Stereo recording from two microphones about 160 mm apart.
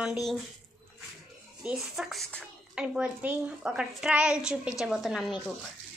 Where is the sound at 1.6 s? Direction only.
Centre (ahead or behind).